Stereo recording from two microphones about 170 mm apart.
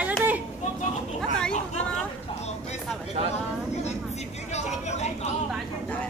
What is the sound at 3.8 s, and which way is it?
Speech, 40° left (ahead or behind).